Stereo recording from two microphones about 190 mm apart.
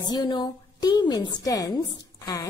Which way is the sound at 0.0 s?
20° left (ahead or behind).